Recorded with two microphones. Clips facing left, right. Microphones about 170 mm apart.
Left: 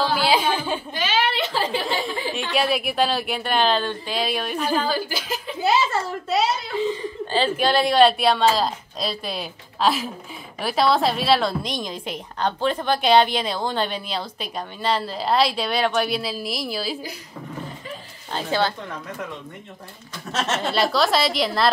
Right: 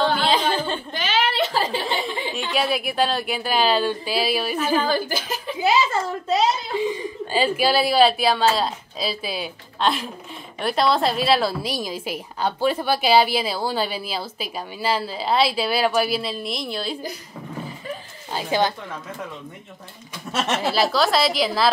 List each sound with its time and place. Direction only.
0.0 s a sound: 10° left (ahead or behind)
0.9 s a sound: 45° right (ahead or behind)
1.9 s a sound: centre (ahead or behind)
2.5 s a woman's voice: centre (ahead or behind)
4.8 s speech: 50° right (ahead or behind)
6.8 s a woman's voice: 15° right (ahead or behind); by 17.0 s 5° left (ahead or behind)
18.3 s speech: 10° right (ahead or behind)
20.3 s speech: 15° right (ahead or behind)
20.7 s a woman's voice: centre (ahead or behind)